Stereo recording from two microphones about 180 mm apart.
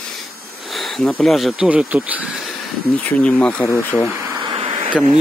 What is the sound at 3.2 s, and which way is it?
Speech, 5° left (ahead or behind).